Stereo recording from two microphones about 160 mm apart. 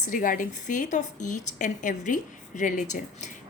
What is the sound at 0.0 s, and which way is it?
A woman's voice, 55° left (ahead or behind).